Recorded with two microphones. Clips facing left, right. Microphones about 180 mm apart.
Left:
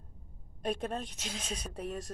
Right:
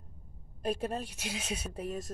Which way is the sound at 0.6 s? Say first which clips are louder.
Right 1 dB; 5° right (ahead or behind).